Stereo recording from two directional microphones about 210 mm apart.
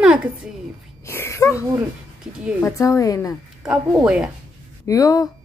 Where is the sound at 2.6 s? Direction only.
15° left (ahead or behind).